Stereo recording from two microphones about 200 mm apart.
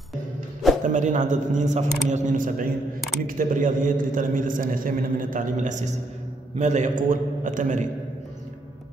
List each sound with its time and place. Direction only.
0.8 s a man's voice: 40° right (ahead or behind)